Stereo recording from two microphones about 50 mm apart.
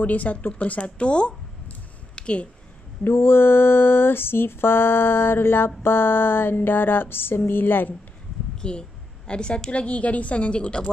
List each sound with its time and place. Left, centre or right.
0.0 s speech: left
3.0 s mantra: left
8.5 s a woman's voice: centre